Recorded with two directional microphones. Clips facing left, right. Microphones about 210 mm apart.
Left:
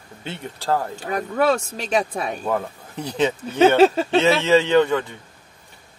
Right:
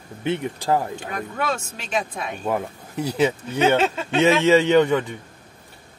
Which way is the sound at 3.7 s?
35° left (ahead or behind).